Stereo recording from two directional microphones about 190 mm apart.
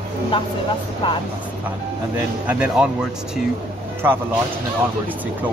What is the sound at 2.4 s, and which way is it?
Speech, 5° right (ahead or behind).